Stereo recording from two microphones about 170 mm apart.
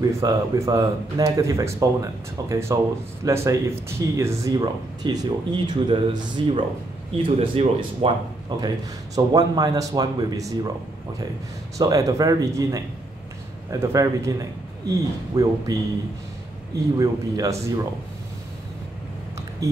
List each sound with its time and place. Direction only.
0.2 s speech: 20° right (ahead or behind)
11.8 s speech: 20° right (ahead or behind)
17.0 s speech: 20° right (ahead or behind)